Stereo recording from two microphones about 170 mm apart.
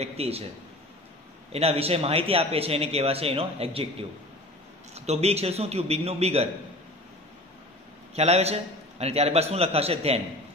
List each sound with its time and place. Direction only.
0.0 s a man's voice: 35° right (ahead or behind)
1.5 s a man's voice: 35° right (ahead or behind)
4.9 s a man's voice: 40° right (ahead or behind)
8.2 s a man's voice: 40° right (ahead or behind)